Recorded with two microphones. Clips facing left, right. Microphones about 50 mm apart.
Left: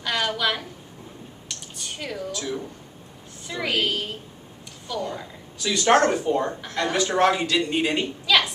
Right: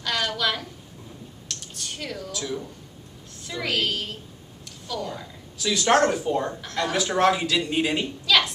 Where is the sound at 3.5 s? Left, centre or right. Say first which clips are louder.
Left 1 dB; centre.